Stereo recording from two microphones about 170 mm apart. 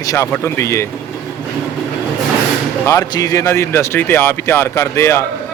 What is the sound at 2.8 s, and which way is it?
Speech, 20° left (ahead or behind).